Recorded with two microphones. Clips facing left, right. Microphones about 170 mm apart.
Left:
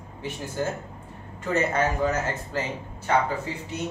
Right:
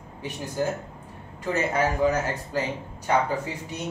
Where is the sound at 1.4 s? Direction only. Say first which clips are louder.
Even; 10° right (ahead or behind).